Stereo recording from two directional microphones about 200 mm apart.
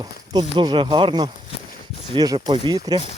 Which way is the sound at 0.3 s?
25° right (ahead or behind).